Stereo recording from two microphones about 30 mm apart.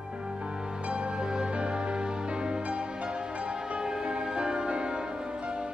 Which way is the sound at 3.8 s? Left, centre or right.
Right.